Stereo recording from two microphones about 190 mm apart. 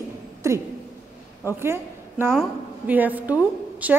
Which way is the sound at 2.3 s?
5° right (ahead or behind).